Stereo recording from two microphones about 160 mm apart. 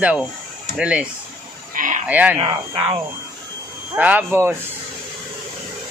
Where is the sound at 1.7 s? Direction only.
55° right (ahead or behind).